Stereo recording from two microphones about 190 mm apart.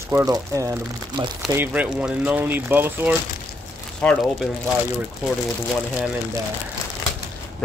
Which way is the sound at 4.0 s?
5° left (ahead or behind).